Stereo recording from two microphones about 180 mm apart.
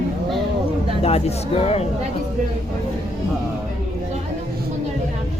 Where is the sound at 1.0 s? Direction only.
35° left (ahead or behind).